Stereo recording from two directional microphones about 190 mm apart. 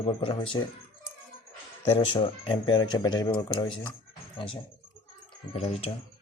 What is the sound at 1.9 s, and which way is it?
Speech, 25° left (ahead or behind).